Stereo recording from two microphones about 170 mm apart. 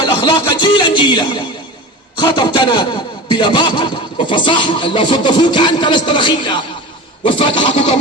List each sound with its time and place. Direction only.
0.0 s speech: 25° left (ahead or behind)